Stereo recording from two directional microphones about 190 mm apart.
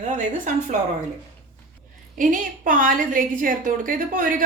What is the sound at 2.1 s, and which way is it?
A woman's voice, 45° right (ahead or behind).